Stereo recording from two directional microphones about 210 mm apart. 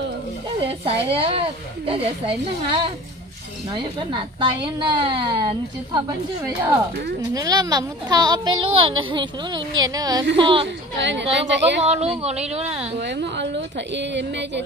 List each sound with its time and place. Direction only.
0.7 s speech: 25° right (ahead or behind)
7.3 s speech: 20° right (ahead or behind)
11.0 s a woman's voice: 60° right (ahead or behind)
11.8 s speech: 30° right (ahead or behind)
13.0 s a woman's voice: 55° right (ahead or behind)